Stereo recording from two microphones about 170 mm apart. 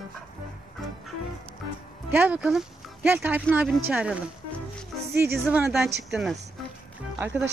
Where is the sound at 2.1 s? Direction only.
10° right (ahead or behind).